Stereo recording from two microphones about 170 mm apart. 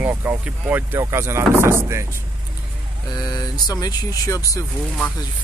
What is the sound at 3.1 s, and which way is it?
Speech, 25° left (ahead or behind).